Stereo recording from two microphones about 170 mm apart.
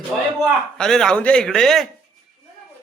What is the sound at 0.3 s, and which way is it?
A man's voice, centre (ahead or behind).